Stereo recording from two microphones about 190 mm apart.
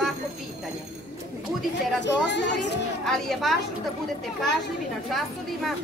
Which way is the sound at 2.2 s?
65° left (ahead or behind).